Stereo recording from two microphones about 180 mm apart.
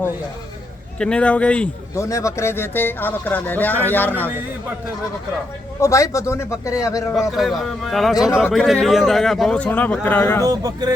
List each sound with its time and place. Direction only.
0.9 s speech: 5° left (ahead or behind)
2.0 s speech: 20° left (ahead or behind)
5.8 s speech: 15° left (ahead or behind)
7.2 s a man's voice: centre (ahead or behind)
10.4 s speech: 20° right (ahead or behind)